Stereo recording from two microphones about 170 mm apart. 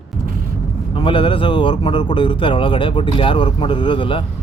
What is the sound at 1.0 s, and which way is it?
Speech, 30° left (ahead or behind).